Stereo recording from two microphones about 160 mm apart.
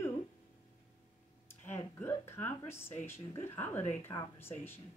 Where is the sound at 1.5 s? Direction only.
15° left (ahead or behind).